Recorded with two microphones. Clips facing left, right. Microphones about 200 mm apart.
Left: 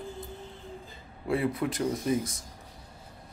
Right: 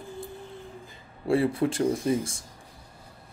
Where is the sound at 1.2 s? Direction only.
30° right (ahead or behind).